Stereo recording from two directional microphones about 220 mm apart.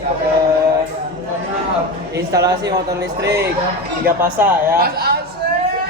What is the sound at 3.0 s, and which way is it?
Speech, 50° right (ahead or behind).